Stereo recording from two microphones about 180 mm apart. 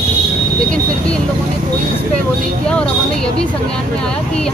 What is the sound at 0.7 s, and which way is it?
Vehicle, 5° left (ahead or behind).